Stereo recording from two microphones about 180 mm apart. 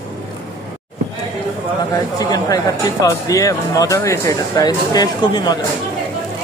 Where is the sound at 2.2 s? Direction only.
20° left (ahead or behind).